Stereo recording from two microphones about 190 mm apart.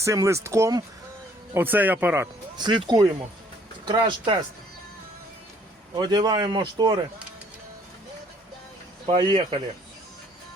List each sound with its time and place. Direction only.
0.0 s speech: 15° right (ahead or behind)
2.6 s a man's voice: 25° right (ahead or behind)
6.0 s a man's voice: 20° right (ahead or behind)
9.0 s a man's voice: 30° right (ahead or behind)